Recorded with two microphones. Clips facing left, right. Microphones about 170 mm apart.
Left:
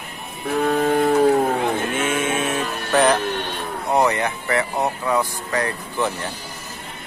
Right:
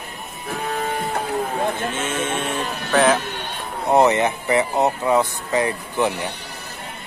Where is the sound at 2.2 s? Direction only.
5° left (ahead or behind).